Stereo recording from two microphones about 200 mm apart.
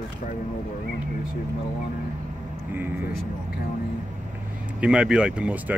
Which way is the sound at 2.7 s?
10° right (ahead or behind).